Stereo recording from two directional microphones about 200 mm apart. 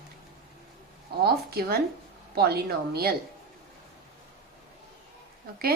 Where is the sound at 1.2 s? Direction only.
50° right (ahead or behind).